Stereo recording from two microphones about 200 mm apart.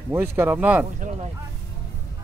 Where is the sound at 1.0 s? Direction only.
35° right (ahead or behind).